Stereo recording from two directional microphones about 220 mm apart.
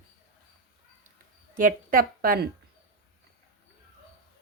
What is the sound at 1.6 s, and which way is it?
Speech, 40° right (ahead or behind).